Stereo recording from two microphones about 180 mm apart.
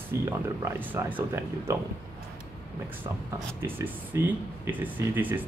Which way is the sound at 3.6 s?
10° right (ahead or behind).